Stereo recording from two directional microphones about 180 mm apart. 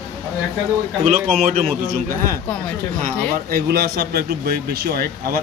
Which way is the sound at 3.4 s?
60° right (ahead or behind).